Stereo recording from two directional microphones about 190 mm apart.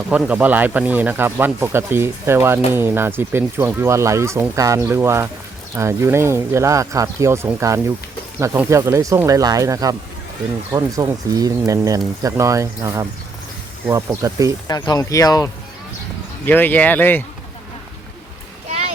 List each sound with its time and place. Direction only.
0.1 s speech: 5° right (ahead or behind)
14.7 s speech: 20° left (ahead or behind)
16.5 s speech: 10° left (ahead or behind)